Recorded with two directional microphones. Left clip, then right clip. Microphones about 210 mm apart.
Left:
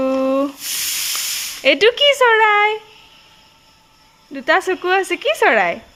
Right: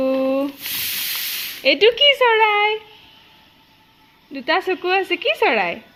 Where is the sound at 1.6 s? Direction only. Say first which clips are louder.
Left 1 dB; 40° left (ahead or behind).